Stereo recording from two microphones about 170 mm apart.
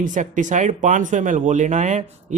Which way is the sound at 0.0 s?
50° right (ahead or behind).